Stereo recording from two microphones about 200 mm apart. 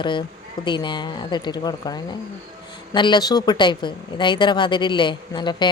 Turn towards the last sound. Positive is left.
turn(degrees=20)  # may be behind; listen again after turning